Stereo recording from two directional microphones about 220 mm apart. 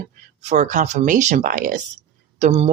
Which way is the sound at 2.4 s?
25° right (ahead or behind).